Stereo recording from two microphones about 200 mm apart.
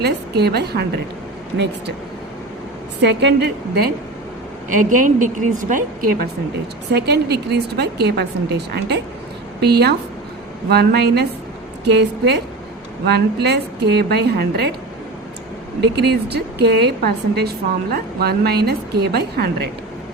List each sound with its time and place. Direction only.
0.0 s a woman's voice: 55° right (ahead or behind)
3.0 s a woman's voice: 60° right (ahead or behind)
4.7 s a woman's voice: 40° right (ahead or behind)
16.0 s a woman's voice: 55° right (ahead or behind)